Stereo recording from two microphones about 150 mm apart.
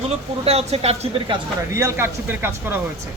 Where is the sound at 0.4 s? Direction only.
45° right (ahead or behind).